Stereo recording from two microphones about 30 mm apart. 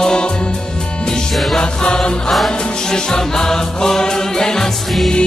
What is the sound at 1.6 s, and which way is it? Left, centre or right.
Music, left.